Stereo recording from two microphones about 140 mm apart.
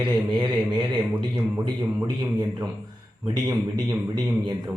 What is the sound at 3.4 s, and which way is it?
Speech, 30° right (ahead or behind).